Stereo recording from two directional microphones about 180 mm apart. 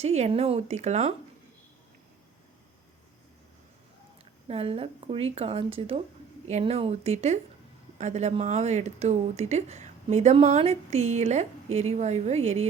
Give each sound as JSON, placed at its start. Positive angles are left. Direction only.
{"t": 0.0, "sound": "speech", "side_deg": -35}
{"t": 4.4, "sound": "speech", "side_deg": -35}